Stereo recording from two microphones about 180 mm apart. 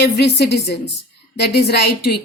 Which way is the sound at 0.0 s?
65° left (ahead or behind).